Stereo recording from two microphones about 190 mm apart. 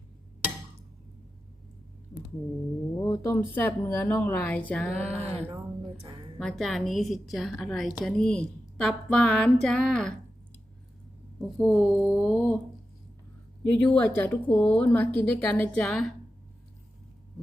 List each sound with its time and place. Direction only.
3.0 s a woman's voice: 15° left (ahead or behind)
5.1 s speech: 35° right (ahead or behind)
6.4 s a woman's voice: centre (ahead or behind)
11.3 s a woman's voice: centre (ahead or behind)
13.7 s a woman's voice: 10° left (ahead or behind)